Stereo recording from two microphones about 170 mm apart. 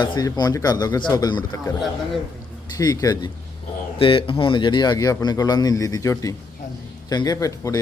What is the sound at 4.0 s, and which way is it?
Speech, 30° left (ahead or behind).